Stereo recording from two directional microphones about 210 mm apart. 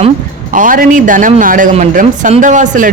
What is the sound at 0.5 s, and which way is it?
Speech, 40° right (ahead or behind).